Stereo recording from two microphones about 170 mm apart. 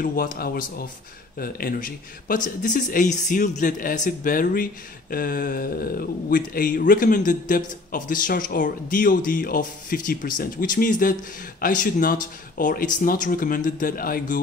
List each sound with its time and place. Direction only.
0.0 s speech: 60° left (ahead or behind)